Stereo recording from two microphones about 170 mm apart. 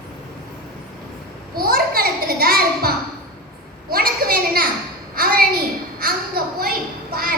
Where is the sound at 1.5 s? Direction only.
60° right (ahead or behind).